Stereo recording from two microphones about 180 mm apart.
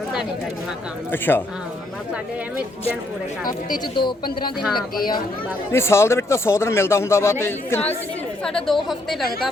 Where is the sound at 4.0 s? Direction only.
25° left (ahead or behind).